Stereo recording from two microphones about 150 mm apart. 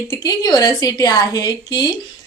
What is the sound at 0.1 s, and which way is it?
A woman's voice, 25° left (ahead or behind).